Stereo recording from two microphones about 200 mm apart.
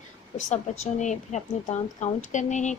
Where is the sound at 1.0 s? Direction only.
35° left (ahead or behind).